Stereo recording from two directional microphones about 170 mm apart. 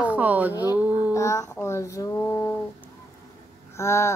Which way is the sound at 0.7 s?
10° right (ahead or behind).